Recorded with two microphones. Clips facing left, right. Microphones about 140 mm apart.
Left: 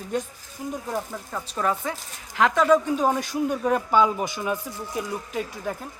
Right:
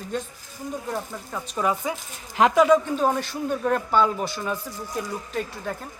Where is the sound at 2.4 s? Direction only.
20° right (ahead or behind).